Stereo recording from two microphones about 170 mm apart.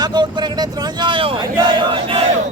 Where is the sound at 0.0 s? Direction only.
25° right (ahead or behind).